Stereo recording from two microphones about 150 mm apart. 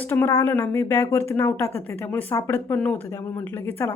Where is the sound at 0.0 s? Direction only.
15° left (ahead or behind).